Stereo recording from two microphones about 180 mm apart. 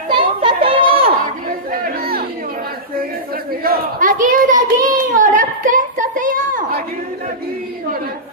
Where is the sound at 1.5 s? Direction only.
55° right (ahead or behind).